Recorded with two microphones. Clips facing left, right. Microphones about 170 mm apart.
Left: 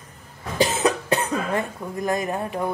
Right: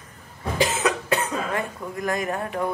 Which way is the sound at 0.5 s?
30° left (ahead or behind).